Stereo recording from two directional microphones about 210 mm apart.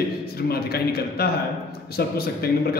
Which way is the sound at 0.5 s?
50° left (ahead or behind).